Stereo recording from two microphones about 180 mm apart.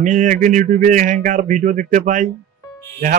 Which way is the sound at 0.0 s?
45° right (ahead or behind).